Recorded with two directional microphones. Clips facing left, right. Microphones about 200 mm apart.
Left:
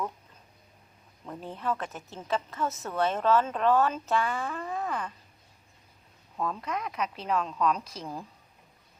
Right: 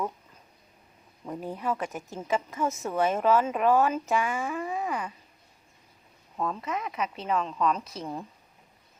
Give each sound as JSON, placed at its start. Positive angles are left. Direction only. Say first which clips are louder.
{"t": 1.2, "sound": "a woman's voice", "louder": "right 3 dB", "side_deg": -10}
{"t": 6.3, "sound": "a woman's voice", "louder": "right 1 dB", "side_deg": 0}